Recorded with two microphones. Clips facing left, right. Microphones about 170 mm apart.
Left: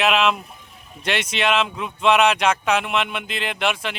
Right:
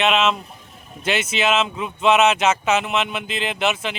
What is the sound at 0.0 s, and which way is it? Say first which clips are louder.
Speech: even; centre (ahead or behind).